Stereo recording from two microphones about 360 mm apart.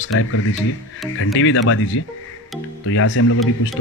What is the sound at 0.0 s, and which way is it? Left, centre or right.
Speech, left.